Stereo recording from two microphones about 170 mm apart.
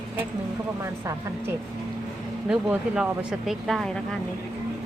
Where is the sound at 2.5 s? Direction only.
5° right (ahead or behind).